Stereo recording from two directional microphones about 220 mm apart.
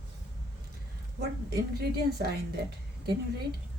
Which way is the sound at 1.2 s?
45° right (ahead or behind).